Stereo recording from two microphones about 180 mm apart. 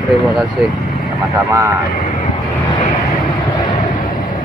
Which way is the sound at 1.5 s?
15° right (ahead or behind).